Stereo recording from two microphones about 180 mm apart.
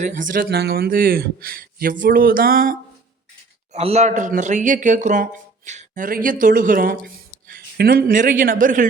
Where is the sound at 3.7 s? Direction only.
35° right (ahead or behind).